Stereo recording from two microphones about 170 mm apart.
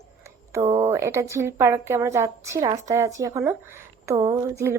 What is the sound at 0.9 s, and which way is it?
A woman's voice, 15° right (ahead or behind).